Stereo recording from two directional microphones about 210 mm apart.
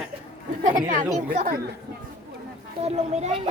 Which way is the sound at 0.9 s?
35° right (ahead or behind).